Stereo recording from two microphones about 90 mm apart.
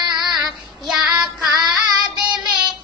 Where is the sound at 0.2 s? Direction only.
5° right (ahead or behind).